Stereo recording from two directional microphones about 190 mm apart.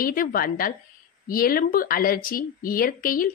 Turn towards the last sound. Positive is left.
turn(degrees=45)  # may be behind; listen again after turning